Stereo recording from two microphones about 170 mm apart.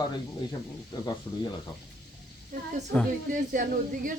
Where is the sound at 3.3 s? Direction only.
50° right (ahead or behind).